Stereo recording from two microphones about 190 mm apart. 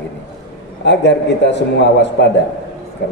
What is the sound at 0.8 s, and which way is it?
A man's voice, 65° left (ahead or behind).